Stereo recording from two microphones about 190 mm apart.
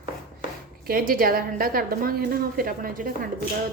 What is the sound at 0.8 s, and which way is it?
A woman's voice, 50° right (ahead or behind).